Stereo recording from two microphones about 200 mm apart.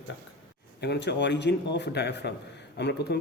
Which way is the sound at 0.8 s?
60° left (ahead or behind).